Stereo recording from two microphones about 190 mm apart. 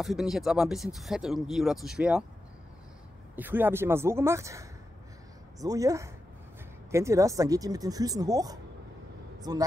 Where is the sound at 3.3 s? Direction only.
10° right (ahead or behind).